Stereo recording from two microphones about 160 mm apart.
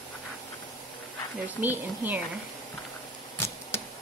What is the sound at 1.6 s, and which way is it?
Speech, 10° right (ahead or behind).